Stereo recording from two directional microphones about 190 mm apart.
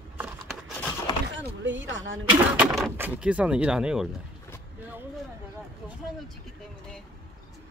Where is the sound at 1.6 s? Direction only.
80° right.